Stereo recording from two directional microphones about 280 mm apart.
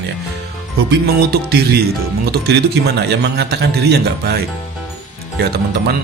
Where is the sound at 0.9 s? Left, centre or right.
Right.